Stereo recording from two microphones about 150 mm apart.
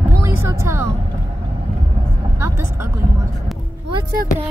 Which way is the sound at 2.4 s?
20° right (ahead or behind).